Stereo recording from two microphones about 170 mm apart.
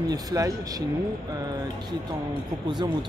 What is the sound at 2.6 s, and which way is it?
Speech, 25° right (ahead or behind).